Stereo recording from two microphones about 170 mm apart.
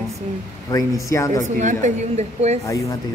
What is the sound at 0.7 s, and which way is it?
Speech, 20° left (ahead or behind).